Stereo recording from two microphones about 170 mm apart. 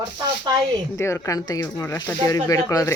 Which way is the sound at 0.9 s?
15° left (ahead or behind).